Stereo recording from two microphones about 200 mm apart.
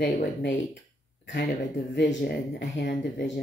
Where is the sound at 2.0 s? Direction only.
45° left (ahead or behind).